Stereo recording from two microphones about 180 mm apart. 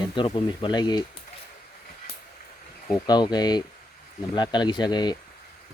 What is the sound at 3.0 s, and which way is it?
Speech, 25° left (ahead or behind).